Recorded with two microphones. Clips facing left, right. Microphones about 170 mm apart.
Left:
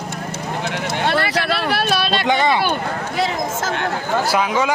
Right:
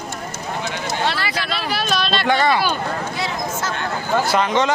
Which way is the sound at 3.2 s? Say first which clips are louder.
Left 3 dB; 85° left.